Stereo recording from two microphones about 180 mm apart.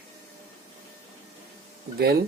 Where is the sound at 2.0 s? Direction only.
60° right (ahead or behind).